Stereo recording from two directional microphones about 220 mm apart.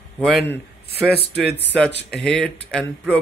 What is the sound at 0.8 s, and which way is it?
Speech, 45° left (ahead or behind).